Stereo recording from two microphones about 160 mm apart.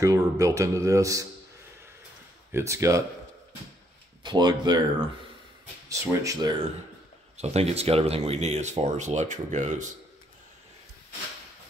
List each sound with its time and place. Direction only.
0.0 s speech: 20° right (ahead or behind)
2.5 s speech: 20° right (ahead or behind)
4.2 s speech: 30° right (ahead or behind)
5.9 s speech: 20° right (ahead or behind)
7.3 s speech: 40° right (ahead or behind)